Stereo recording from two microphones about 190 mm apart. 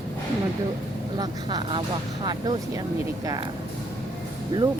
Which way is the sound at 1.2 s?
20° right (ahead or behind).